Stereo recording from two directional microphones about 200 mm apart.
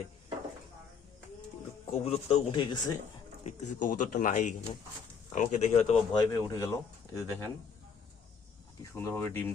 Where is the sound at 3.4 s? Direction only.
40° left (ahead or behind).